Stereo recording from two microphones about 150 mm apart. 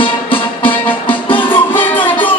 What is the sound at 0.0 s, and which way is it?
Music, 35° left (ahead or behind).